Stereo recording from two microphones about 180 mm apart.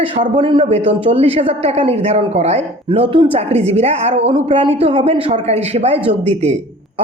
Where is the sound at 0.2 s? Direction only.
30° right (ahead or behind).